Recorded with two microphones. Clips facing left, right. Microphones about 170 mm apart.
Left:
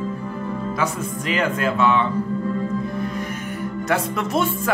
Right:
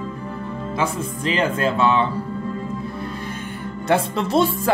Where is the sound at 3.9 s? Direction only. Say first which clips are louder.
Right 4 dB; 30° right (ahead or behind).